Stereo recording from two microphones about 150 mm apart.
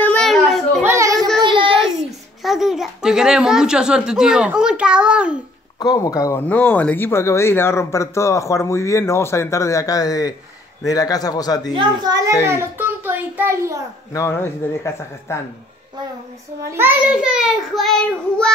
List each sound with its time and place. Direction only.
0.0 s children playing: 5° left (ahead or behind)
0.8 s child singing: 20° right (ahead or behind)
1.4 s child singing: 35° right (ahead or behind)
2.4 s speech: centre (ahead or behind)
5.8 s a man's voice: 25° left (ahead or behind)
6.4 s a man's voice: 10° left (ahead or behind)
11.7 s a child's voice: 25° right (ahead or behind)
12.4 s a child's voice: 15° right (ahead or behind)
14.1 s speech: 15° left (ahead or behind)
16.7 s a child's voice: 10° right (ahead or behind)